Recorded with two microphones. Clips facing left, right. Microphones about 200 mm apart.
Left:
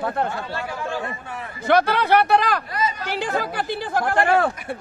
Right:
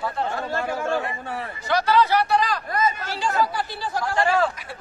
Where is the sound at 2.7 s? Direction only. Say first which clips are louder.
Right 2 dB; 50° right (ahead or behind).